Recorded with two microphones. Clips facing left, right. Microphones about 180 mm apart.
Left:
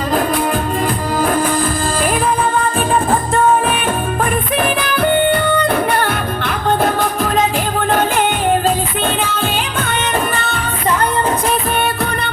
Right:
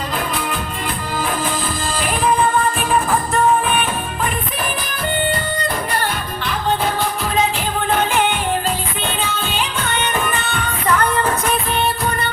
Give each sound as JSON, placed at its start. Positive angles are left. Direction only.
{"t": 1.1, "sound": "music", "side_deg": 50}
{"t": 5.3, "sound": "music", "side_deg": 60}
{"t": 9.2, "sound": "music", "side_deg": 50}